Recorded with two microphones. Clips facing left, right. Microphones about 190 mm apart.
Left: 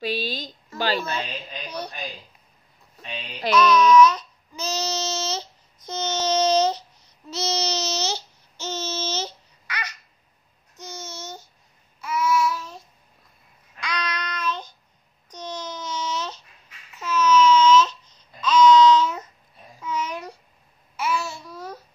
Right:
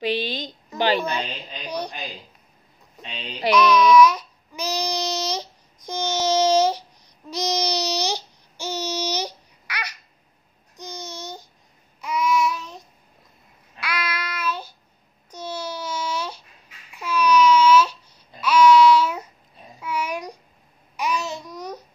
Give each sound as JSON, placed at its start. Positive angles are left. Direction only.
{"t": 0.4, "sound": "speech", "side_deg": -20}
{"t": 3.0, "sound": "babbling", "side_deg": -15}
{"t": 12.0, "sound": "child singing", "side_deg": -15}
{"t": 13.7, "sound": "child singing", "side_deg": -5}
{"t": 15.2, "sound": "a sound", "side_deg": -10}
{"t": 16.9, "sound": "babbling", "side_deg": -10}